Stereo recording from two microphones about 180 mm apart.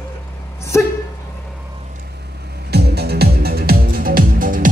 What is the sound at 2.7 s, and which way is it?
Music, 65° right (ahead or behind).